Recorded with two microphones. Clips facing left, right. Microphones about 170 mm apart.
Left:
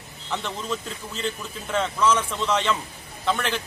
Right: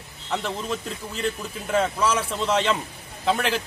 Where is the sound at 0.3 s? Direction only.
35° right (ahead or behind).